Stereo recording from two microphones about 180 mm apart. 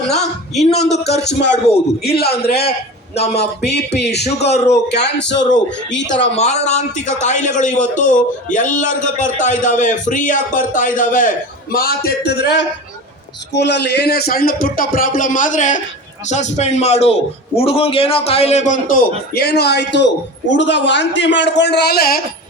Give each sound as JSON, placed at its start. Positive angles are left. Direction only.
{"t": 0.6, "sound": "speech", "side_deg": 35}
{"t": 1.2, "sound": "speech", "side_deg": 70}
{"t": 2.2, "sound": "speech", "side_deg": 35}
{"t": 2.5, "sound": "a man's voice", "side_deg": 60}
{"t": 6.3, "sound": "a man's voice", "side_deg": 35}